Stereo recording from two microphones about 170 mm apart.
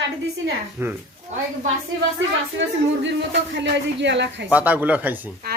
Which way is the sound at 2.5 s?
90° right.